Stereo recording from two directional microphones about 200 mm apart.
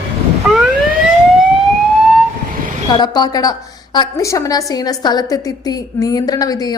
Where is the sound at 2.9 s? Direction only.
20° left (ahead or behind).